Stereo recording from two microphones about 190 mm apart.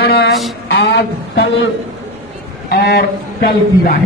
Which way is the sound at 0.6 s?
70° left (ahead or behind).